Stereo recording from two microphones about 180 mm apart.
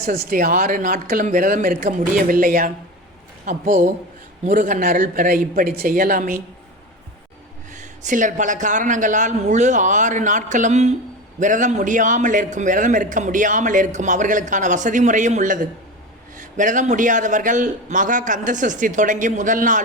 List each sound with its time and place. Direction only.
0.0 s a man's voice: 55° right (ahead or behind)
7.7 s a man's voice: 45° right (ahead or behind)